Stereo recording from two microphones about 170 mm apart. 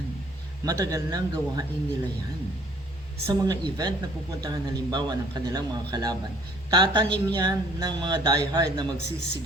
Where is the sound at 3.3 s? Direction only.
20° right (ahead or behind).